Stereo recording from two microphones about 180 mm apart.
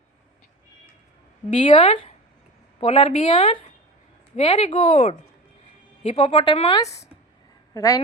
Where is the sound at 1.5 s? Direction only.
40° left (ahead or behind); by 8.0 s 20° left (ahead or behind).